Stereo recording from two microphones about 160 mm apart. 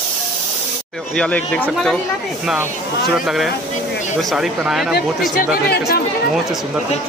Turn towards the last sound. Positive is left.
turn(degrees=75)  # may be behind; listen again after turning